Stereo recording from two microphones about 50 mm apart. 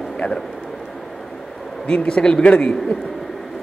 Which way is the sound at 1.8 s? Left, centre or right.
Centre.